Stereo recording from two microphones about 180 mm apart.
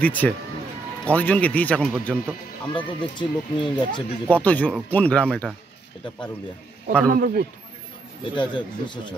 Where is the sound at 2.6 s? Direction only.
25° left (ahead or behind).